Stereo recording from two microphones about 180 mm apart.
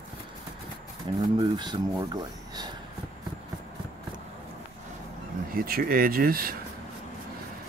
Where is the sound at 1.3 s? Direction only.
25° right (ahead or behind).